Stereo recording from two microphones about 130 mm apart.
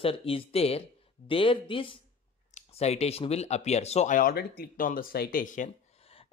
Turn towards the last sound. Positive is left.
turn(degrees=80)